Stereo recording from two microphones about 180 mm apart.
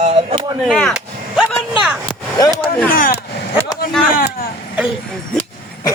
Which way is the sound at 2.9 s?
50° left (ahead or behind).